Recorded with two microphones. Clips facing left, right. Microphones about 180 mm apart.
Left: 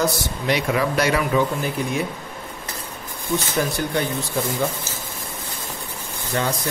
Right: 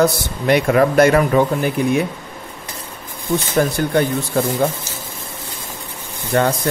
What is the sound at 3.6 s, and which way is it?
Speech, 55° right (ahead or behind).